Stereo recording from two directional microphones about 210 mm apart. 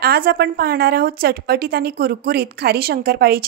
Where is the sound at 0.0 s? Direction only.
50° right (ahead or behind).